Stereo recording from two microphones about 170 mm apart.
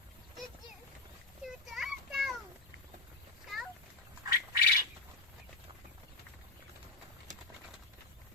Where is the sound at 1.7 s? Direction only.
Centre (ahead or behind).